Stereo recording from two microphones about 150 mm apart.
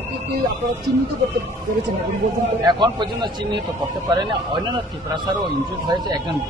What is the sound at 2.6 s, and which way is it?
Speech, 30° right (ahead or behind).